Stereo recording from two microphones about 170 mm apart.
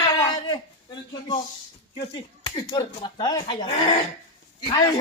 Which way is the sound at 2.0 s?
25° left (ahead or behind).